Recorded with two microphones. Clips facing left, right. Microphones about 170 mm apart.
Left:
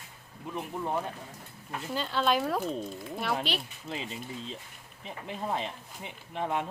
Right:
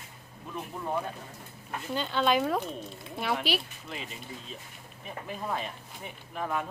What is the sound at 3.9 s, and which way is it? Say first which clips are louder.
Speech: left 3 dB; 30° left (ahead or behind).